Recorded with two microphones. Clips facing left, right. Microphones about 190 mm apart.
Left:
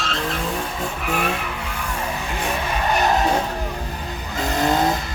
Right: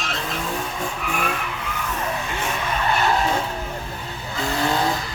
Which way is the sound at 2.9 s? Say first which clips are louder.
Left 3 dB; 15° left (ahead or behind).